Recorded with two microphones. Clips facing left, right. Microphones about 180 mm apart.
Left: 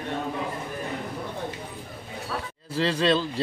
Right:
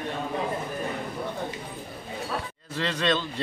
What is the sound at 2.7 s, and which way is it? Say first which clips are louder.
Speech: left 4 dB; 30° left (ahead or behind).